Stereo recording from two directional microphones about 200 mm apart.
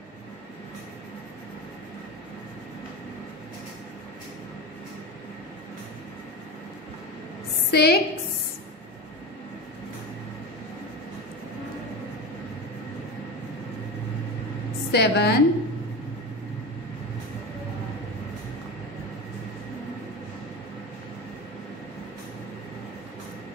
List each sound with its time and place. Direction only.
7.7 s a woman's voice: 55° left (ahead or behind)
14.9 s a woman's voice: 55° left (ahead or behind)